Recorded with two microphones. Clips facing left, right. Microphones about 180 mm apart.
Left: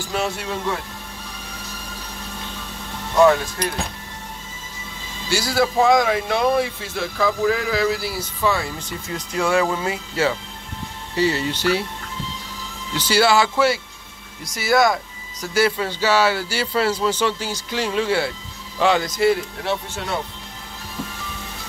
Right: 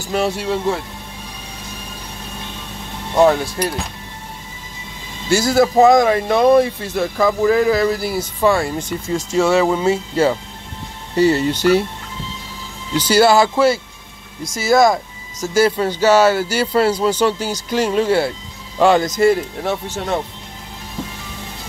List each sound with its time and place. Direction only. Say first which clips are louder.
0.1 s speech: right 6 dB; 35° right (ahead or behind)
3.2 s speech: right 2 dB; 35° right (ahead or behind)
5.3 s a man's voice: right 6 dB; 45° right (ahead or behind)
9.1 s speech: right 5 dB; 25° right (ahead or behind)
11.1 s a man's voice: right 6 dB; 45° right (ahead or behind)
12.9 s a man's voice: right 5 dB; 45° right (ahead or behind)